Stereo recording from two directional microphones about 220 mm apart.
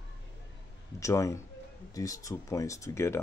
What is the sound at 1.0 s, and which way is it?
Speech, 15° left (ahead or behind).